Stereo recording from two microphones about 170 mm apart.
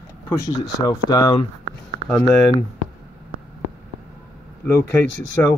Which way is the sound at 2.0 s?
10° left (ahead or behind).